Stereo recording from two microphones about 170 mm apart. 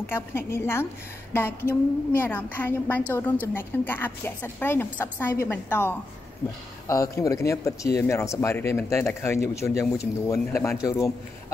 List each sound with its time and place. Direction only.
0.1 s a woman's voice: 15° left (ahead or behind)